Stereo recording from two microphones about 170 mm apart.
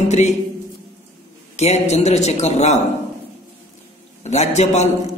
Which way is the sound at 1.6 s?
40° left (ahead or behind).